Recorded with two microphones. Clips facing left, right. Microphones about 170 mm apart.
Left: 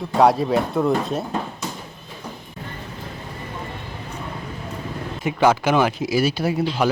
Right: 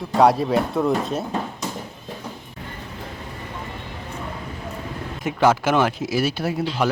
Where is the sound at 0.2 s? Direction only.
Centre (ahead or behind).